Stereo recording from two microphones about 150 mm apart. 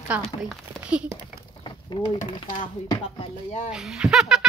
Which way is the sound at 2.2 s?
30° left (ahead or behind).